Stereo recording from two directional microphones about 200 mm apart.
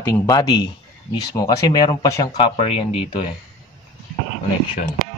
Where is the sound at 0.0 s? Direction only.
15° left (ahead or behind).